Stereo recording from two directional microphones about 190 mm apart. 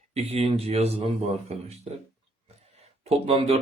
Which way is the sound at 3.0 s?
30° right (ahead or behind).